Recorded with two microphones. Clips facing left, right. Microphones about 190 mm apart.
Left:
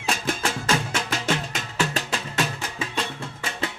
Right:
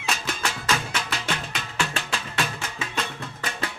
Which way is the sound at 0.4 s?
30° left (ahead or behind).